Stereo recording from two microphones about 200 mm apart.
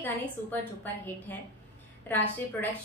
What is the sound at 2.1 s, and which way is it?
Speech, 10° left (ahead or behind).